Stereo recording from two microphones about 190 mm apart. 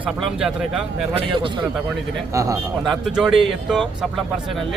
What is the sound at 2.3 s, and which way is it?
Speech, 15° right (ahead or behind).